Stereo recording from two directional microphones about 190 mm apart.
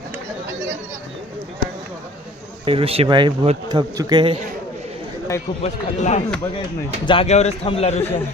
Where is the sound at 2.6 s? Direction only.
30° right (ahead or behind).